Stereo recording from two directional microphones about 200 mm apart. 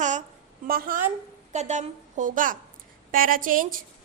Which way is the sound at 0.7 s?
45° right (ahead or behind).